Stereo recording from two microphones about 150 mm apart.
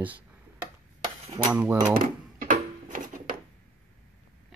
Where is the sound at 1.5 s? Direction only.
10° right (ahead or behind).